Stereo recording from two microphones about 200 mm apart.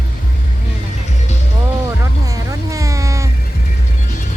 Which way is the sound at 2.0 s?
15° right (ahead or behind).